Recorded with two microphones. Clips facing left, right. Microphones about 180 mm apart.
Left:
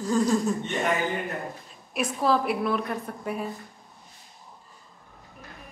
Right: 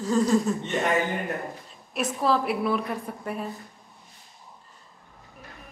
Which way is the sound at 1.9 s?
Centre (ahead or behind).